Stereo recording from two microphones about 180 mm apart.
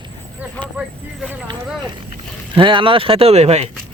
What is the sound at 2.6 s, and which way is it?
Speech, 30° right (ahead or behind).